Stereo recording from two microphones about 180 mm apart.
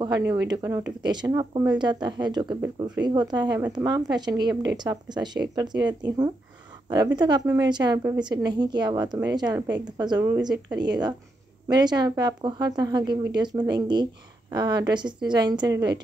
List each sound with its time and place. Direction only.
0.0 s a woman's voice: 20° right (ahead or behind)